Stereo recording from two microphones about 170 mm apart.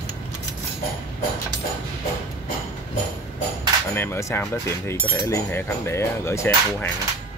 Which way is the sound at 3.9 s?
15° left (ahead or behind).